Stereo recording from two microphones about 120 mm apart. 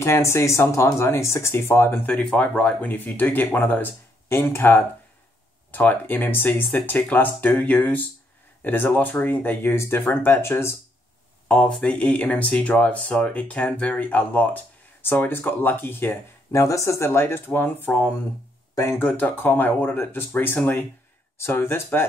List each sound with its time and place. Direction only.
0.0 s speech: 25° left (ahead or behind)
11.4 s speech: 10° left (ahead or behind)